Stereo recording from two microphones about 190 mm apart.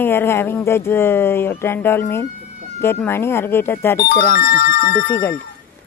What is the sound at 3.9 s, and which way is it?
Speech, 50° left (ahead or behind).